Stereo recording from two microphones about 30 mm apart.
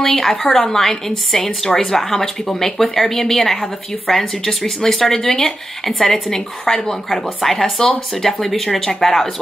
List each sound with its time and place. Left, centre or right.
0.0 s a woman's voice: centre
5.2 s speech: left
5.9 s a woman's voice: centre